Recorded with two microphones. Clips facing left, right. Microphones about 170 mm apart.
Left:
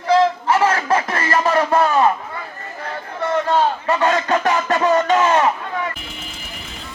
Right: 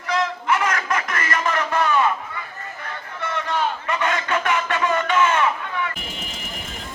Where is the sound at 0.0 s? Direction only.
30° left (ahead or behind).